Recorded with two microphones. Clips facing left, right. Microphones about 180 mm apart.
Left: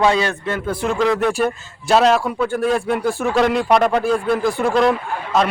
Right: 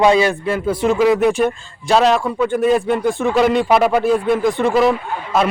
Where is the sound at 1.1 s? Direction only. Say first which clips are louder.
Right 3 dB; centre (ahead or behind).